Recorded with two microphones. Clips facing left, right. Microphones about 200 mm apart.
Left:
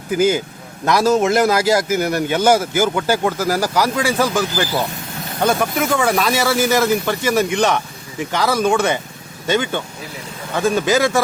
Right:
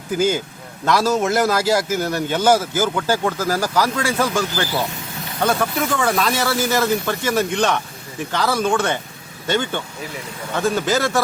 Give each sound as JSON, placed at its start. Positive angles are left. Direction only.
{"t": 0.2, "sound": "speech", "side_deg": 10}